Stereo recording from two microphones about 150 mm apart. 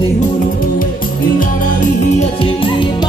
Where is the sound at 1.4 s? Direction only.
60° left (ahead or behind).